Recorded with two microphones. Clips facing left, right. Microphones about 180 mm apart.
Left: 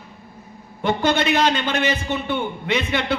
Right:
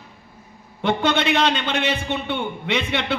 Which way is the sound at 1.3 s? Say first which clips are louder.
Left 1 dB; 10° left (ahead or behind).